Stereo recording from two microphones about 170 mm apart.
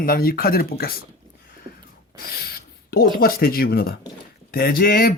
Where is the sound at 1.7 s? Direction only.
30° right (ahead or behind).